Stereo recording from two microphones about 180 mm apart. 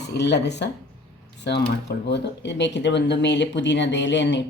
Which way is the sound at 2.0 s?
70° left (ahead or behind).